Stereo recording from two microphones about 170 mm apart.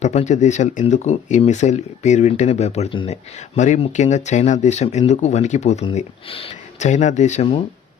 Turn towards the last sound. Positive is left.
turn(degrees=45)  # may be behind; listen again after turning